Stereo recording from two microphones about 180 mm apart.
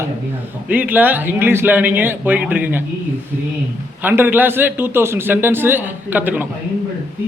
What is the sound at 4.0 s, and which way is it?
A man's voice, 10° right (ahead or behind).